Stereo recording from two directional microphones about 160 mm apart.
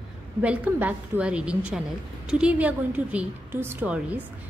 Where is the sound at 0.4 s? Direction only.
10° right (ahead or behind).